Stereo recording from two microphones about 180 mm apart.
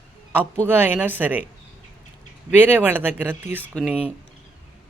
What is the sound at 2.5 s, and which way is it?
A woman's voice, 10° right (ahead or behind).